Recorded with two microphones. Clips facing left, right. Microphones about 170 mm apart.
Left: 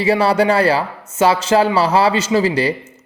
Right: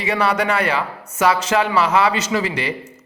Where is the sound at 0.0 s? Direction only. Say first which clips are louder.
Left 5 dB; 30° left (ahead or behind).